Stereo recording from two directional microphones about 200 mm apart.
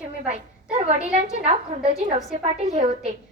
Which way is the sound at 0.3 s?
30° right (ahead or behind).